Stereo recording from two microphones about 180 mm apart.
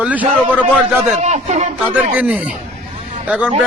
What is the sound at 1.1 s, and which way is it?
Speech, 40° right (ahead or behind).